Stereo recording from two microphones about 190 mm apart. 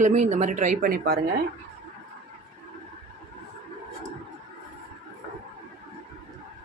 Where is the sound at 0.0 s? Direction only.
35° right (ahead or behind); by 1.2 s 55° right (ahead or behind).